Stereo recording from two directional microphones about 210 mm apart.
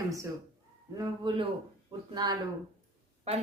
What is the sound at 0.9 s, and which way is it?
A man's voice, 20° right (ahead or behind).